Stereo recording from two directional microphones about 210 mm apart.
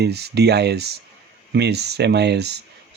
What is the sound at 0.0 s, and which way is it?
Speech, 50° right (ahead or behind).